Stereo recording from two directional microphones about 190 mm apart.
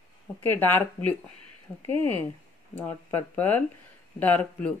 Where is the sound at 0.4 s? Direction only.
10° left (ahead or behind).